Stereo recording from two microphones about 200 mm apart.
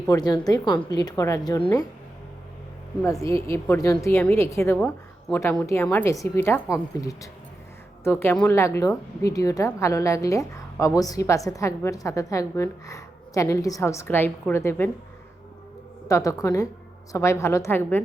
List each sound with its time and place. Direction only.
0.1 s a woman's voice: 20° left (ahead or behind)
3.0 s a woman's voice: 15° left (ahead or behind)
16.0 s a woman's voice: 15° left (ahead or behind)